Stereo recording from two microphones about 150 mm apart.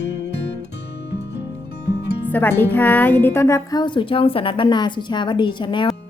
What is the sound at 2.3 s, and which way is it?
A woman's voice, 10° left (ahead or behind).